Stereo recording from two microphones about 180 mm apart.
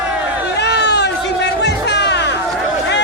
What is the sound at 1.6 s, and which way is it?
Music, 70° left (ahead or behind).